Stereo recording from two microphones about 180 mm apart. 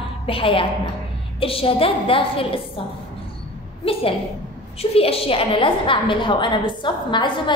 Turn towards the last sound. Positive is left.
turn(degrees=25)  # may be behind; listen again after turning